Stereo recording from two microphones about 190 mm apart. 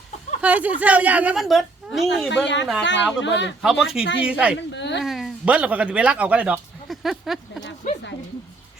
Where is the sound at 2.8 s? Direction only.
70° left (ahead or behind).